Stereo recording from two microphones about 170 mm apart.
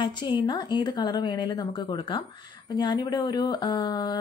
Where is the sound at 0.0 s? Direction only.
25° left (ahead or behind).